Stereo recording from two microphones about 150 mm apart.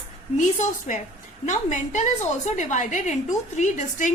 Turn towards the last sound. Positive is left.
turn(degrees=55)  # may be behind; listen again after turning